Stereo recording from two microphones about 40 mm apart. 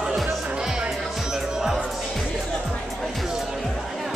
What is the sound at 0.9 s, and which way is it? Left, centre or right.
Music, centre.